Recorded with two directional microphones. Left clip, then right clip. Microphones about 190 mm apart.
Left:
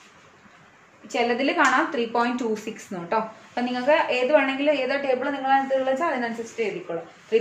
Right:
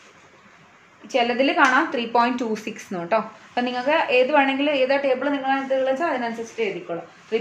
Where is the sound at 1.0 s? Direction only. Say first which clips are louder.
Right 3 dB; 35° right (ahead or behind).